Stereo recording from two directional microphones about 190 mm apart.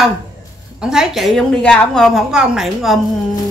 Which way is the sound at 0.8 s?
Centre (ahead or behind).